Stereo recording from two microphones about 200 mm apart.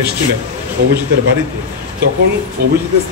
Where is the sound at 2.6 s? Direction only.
50° right (ahead or behind).